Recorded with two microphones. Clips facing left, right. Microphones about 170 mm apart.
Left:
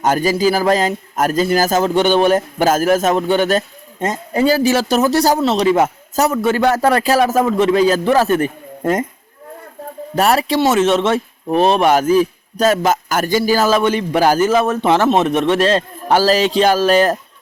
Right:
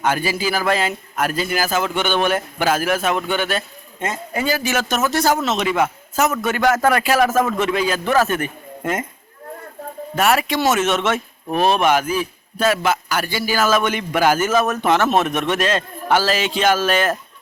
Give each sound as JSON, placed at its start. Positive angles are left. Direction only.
{"t": 0.0, "sound": "a man's voice", "side_deg": 40}
{"t": 10.2, "sound": "a man's voice", "side_deg": 35}
{"t": 11.9, "sound": "a man's voice", "side_deg": 40}